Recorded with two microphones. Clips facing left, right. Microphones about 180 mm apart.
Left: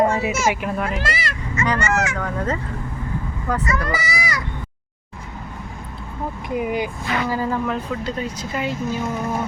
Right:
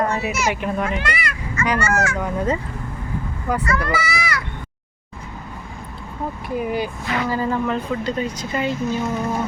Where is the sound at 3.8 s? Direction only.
20° left (ahead or behind).